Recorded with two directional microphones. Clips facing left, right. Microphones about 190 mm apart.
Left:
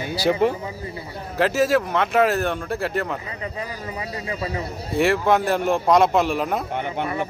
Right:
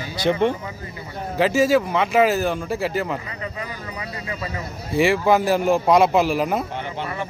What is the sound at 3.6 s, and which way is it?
Speech, 30° left (ahead or behind).